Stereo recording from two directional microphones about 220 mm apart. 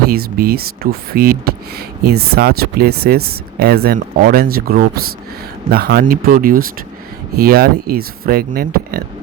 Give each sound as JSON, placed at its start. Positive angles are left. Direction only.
{"t": 0.1, "sound": "speech", "side_deg": -45}